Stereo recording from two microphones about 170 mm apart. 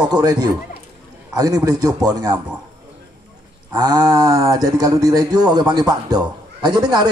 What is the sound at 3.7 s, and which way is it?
Speech, 20° right (ahead or behind).